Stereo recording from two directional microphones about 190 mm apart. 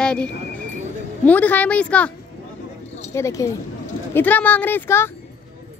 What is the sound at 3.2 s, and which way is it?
A woman's voice, 15° left (ahead or behind).